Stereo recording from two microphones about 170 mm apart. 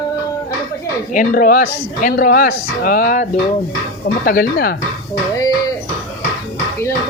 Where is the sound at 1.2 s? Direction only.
55° left (ahead or behind).